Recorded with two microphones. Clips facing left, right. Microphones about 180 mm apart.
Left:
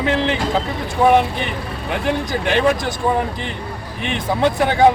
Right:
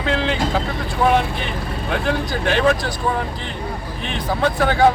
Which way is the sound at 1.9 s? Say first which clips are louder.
Left 1 dB; 15° left (ahead or behind).